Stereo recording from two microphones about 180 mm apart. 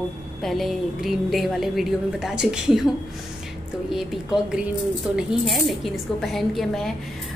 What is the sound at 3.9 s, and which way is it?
A woman's voice, centre (ahead or behind).